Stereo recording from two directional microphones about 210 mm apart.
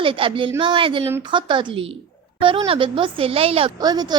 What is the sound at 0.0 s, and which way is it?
A woman's voice, 25° right (ahead or behind).